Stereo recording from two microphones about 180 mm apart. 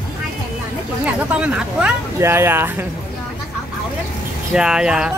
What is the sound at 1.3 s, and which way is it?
Speech, 5° right (ahead or behind).